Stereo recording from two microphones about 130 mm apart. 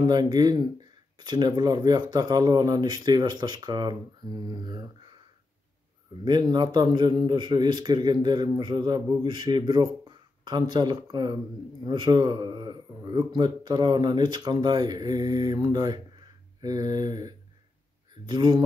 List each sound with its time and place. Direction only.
0.0 s a man's voice: 30° right (ahead or behind)
6.2 s a man's voice: 35° right (ahead or behind)
16.6 s a sound: 30° right (ahead or behind)
18.2 s a man's voice: 35° right (ahead or behind)